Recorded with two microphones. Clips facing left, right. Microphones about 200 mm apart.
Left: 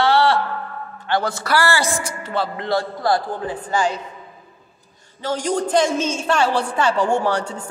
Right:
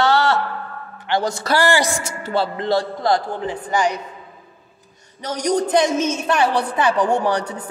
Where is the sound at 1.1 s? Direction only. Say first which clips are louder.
Right 1 dB; 20° right (ahead or behind).